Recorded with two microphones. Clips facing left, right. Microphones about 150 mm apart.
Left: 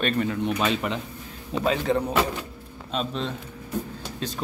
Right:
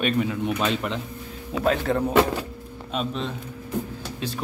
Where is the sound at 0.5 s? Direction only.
5° left (ahead or behind).